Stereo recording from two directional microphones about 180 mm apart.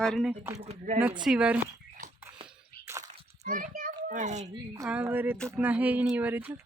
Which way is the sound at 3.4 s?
50° right (ahead or behind).